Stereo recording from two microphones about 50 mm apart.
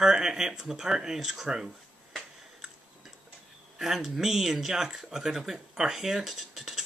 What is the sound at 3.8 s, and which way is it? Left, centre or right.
Speech, centre.